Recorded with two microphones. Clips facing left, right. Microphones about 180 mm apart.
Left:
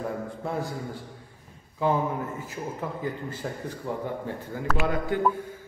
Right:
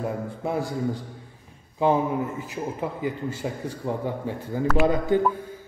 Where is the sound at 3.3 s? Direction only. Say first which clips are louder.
Right 4 dB; 25° right (ahead or behind).